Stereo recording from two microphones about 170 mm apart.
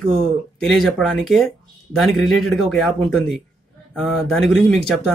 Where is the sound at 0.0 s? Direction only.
5° left (ahead or behind).